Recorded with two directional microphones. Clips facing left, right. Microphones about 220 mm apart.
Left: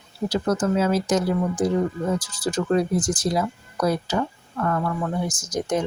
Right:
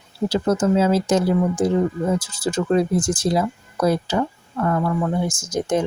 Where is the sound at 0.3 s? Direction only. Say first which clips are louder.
Right 3 dB; 25° right (ahead or behind).